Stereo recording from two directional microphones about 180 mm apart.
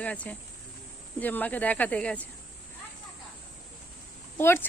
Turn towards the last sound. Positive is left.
turn(degrees=10)  # may be behind; listen again after turning